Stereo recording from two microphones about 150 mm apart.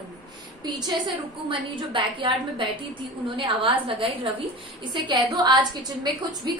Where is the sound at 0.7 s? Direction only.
30° right (ahead or behind).